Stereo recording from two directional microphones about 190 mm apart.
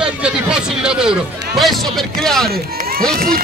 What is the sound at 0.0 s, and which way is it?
Speech, 5° right (ahead or behind).